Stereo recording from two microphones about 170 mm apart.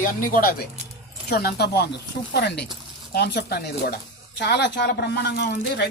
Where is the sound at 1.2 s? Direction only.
70° left (ahead or behind).